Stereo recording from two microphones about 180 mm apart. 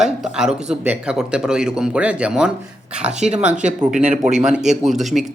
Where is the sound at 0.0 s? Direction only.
Centre (ahead or behind).